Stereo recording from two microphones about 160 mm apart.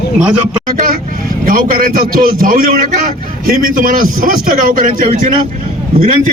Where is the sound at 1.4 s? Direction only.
60° right (ahead or behind).